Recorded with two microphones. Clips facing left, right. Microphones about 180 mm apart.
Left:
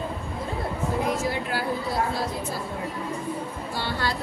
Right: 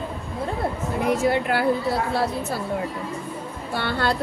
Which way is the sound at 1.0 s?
60° right (ahead or behind).